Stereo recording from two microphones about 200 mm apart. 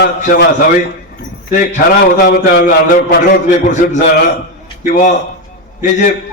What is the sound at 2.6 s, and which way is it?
Speech, 40° left (ahead or behind).